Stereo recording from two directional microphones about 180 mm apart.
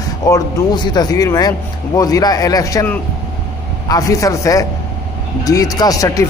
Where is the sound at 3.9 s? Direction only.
20° left (ahead or behind).